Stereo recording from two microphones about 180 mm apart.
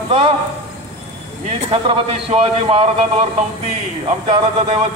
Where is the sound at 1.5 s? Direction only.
30° right (ahead or behind).